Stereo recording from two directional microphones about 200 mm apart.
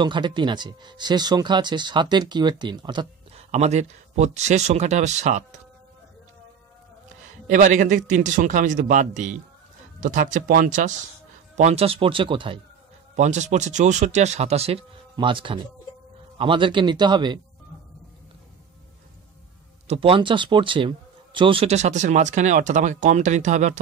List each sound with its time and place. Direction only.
0.0 s speech: 25° right (ahead or behind)
3.5 s speech: 35° right (ahead or behind)
7.4 s speech: 40° right (ahead or behind); by 12.5 s 25° right (ahead or behind)
13.1 s speech: 35° right (ahead or behind)
19.9 s speech: 25° right (ahead or behind)